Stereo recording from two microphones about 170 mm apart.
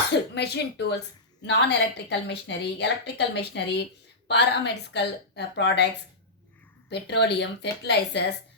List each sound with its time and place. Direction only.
0.1 s a woman's voice: 75° left (ahead or behind)
6.9 s a woman's voice: 80° left